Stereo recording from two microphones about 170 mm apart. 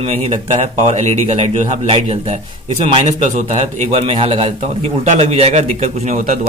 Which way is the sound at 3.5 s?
40° right (ahead or behind).